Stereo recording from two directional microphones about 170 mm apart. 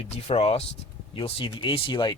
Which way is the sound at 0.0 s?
35° left (ahead or behind).